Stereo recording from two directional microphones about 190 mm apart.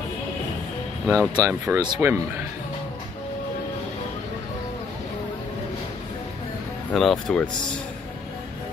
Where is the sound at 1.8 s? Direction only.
10° right (ahead or behind).